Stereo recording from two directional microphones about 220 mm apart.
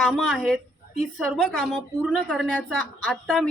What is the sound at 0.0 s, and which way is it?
Speech, centre (ahead or behind).